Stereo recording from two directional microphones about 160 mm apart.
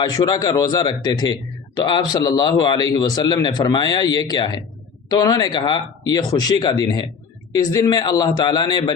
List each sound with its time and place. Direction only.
0.0 s speech: 25° left (ahead or behind)